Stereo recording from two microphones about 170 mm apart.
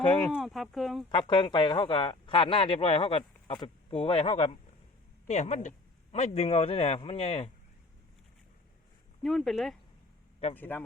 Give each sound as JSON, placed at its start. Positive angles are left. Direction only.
{"t": 0.3, "sound": "speech", "side_deg": 0}
{"t": 1.1, "sound": "speech", "side_deg": 30}
{"t": 9.2, "sound": "a man's voice", "side_deg": 0}